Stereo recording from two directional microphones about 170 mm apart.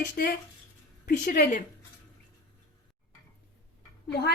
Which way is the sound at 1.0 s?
50° left (ahead or behind).